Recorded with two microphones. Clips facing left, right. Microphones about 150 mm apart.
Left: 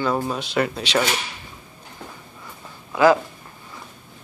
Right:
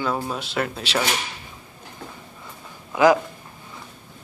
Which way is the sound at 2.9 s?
15° right (ahead or behind).